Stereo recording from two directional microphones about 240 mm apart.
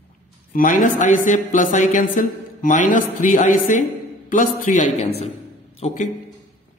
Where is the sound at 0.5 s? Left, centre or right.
Left.